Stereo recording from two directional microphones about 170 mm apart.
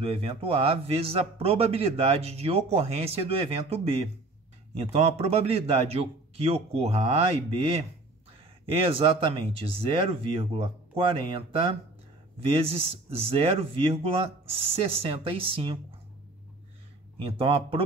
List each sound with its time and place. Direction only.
0.0 s speech: 35° right (ahead or behind)
17.2 s speech: 35° right (ahead or behind)